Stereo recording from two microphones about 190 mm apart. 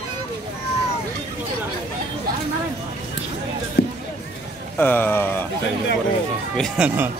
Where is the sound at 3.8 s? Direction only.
55° left (ahead or behind).